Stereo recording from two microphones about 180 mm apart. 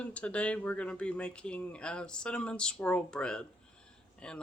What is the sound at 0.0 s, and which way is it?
Speech, 5° left (ahead or behind).